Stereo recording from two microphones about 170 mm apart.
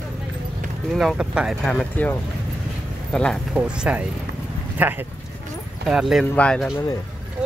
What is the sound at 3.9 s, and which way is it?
Speech, 10° right (ahead or behind).